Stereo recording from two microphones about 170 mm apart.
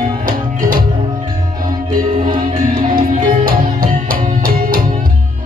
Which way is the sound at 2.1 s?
30° right (ahead or behind).